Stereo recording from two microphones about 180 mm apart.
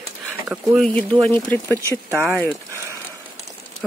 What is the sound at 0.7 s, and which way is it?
Speech, 5° left (ahead or behind).